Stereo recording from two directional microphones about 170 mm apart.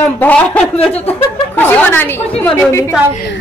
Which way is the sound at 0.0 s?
10° left (ahead or behind).